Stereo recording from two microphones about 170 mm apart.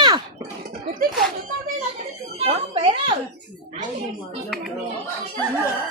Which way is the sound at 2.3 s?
35° right (ahead or behind).